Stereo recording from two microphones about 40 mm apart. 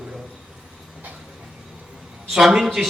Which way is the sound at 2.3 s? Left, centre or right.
Centre.